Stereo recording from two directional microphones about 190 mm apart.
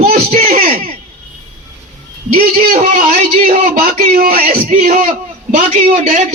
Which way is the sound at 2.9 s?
45° right (ahead or behind).